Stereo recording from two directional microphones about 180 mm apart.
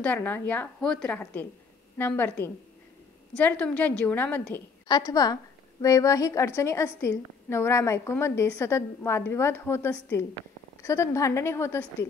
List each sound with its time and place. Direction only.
0.0 s a woman's voice: 10° left (ahead or behind)
3.3 s a woman's voice: 10° left (ahead or behind)
4.8 s a woman's voice: 20° left (ahead or behind)